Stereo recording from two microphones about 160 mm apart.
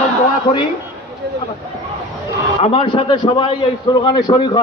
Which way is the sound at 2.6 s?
35° left (ahead or behind).